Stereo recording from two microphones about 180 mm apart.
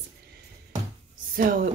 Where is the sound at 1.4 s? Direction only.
55° right (ahead or behind).